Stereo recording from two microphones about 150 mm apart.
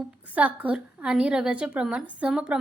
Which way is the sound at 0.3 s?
10° right (ahead or behind).